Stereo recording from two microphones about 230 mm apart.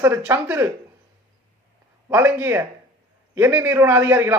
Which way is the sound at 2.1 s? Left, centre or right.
Centre.